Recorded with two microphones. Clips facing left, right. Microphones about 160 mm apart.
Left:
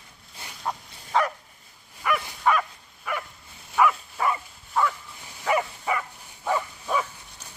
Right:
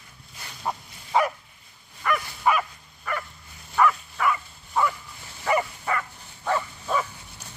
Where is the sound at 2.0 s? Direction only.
10° left (ahead or behind).